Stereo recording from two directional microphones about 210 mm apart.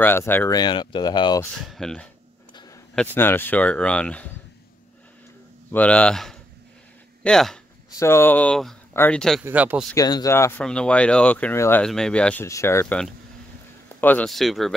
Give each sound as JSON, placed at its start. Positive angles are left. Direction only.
{"t": 0.0, "sound": "speech", "side_deg": 10}
{"t": 1.7, "sound": "speech", "side_deg": 0}
{"t": 3.2, "sound": "speech", "side_deg": 10}
{"t": 5.7, "sound": "speech", "side_deg": 5}
{"t": 9.4, "sound": "speech", "side_deg": -10}
{"t": 9.9, "sound": "speech", "side_deg": 15}
{"t": 14.0, "sound": "speech", "side_deg": 5}